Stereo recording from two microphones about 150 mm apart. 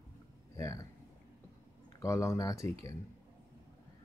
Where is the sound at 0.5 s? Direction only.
20° left (ahead or behind).